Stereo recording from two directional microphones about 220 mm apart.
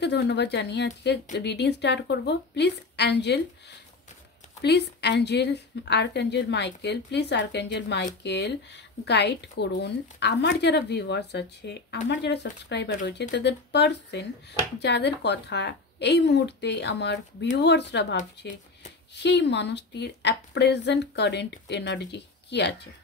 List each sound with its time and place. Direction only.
0.0 s a woman's voice: 50° left (ahead or behind)
4.6 s a woman's voice: 50° left (ahead or behind)